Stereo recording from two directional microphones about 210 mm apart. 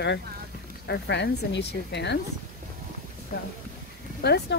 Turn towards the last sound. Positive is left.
turn(degrees=50)  # may be behind; listen again after turning